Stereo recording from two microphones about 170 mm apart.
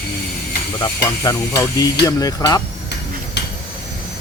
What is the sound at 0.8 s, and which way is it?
Speech, 20° left (ahead or behind).